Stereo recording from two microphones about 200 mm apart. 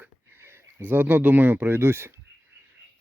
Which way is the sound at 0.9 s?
10° right (ahead or behind).